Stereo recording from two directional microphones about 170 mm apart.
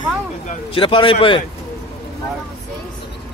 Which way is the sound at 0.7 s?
30° left (ahead or behind).